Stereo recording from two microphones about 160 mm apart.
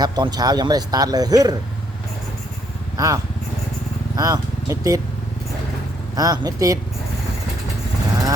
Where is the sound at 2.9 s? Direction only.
20° right (ahead or behind).